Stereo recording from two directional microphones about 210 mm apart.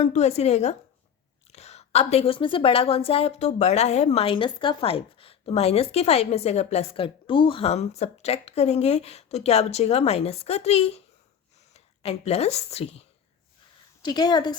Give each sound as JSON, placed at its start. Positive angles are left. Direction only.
{"t": 0.0, "sound": "a woman's voice", "side_deg": 30}